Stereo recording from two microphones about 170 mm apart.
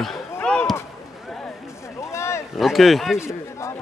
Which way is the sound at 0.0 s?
5° left (ahead or behind).